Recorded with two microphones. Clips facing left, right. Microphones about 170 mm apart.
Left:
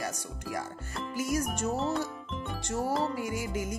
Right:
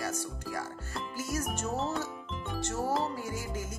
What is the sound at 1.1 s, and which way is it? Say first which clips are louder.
Music: left 5 dB; 15° left (ahead or behind).